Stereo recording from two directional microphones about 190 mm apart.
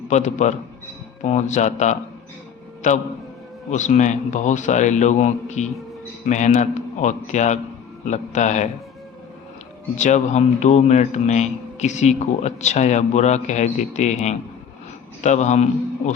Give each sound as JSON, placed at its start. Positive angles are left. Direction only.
{"t": 0.1, "sound": "a man's voice", "side_deg": 40}
{"t": 10.0, "sound": "a man's voice", "side_deg": 40}